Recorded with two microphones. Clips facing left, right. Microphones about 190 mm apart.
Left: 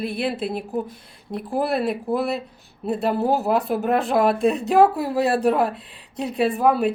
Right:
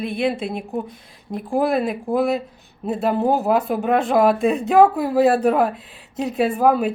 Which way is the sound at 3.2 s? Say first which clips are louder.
Right 2 dB; 5° left (ahead or behind).